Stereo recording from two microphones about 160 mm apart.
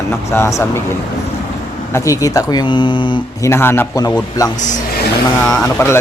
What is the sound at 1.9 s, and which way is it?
Speech, 20° left (ahead or behind).